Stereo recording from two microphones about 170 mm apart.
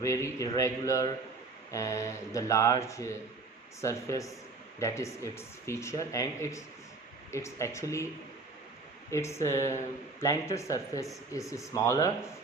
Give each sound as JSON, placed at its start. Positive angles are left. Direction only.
{"t": 0.0, "sound": "speech", "side_deg": 20}
{"t": 9.0, "sound": "speech", "side_deg": 15}